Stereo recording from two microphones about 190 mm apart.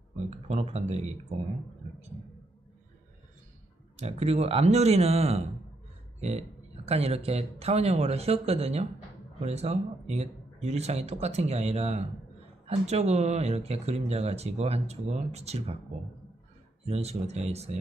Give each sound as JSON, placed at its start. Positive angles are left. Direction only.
{"t": 0.1, "sound": "speech", "side_deg": -35}
{"t": 3.9, "sound": "speech", "side_deg": -35}
{"t": 16.8, "sound": "speech", "side_deg": -35}